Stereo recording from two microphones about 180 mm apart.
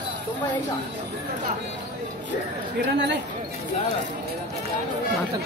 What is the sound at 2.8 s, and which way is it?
Speech, 75° right (ahead or behind).